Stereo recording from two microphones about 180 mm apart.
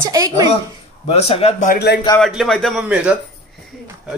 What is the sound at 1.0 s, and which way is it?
Speech, 35° left (ahead or behind).